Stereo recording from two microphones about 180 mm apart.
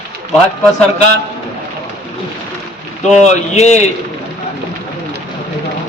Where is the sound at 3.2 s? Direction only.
40° left (ahead or behind).